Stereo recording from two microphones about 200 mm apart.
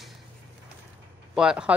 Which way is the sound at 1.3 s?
5° right (ahead or behind).